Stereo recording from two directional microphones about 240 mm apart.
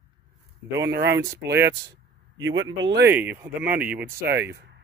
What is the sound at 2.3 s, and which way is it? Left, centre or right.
Speech, right.